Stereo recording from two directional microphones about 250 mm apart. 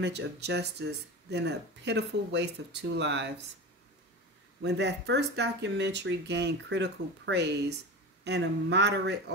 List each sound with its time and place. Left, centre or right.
0.0 s speech: right
4.6 s speech: right